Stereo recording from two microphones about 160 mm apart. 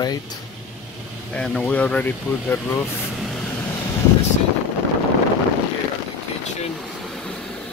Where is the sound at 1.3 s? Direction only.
5° left (ahead or behind).